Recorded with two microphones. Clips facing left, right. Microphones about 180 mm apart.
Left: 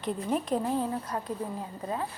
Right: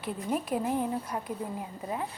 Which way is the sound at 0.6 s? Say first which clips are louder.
Even; 15° right (ahead or behind).